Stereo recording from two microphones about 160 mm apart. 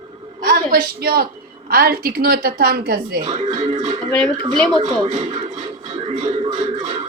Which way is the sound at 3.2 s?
40° right (ahead or behind).